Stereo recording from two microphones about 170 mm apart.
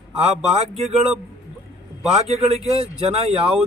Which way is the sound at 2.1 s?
35° right (ahead or behind).